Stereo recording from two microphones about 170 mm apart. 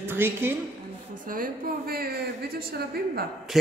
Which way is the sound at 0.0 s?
15° right (ahead or behind).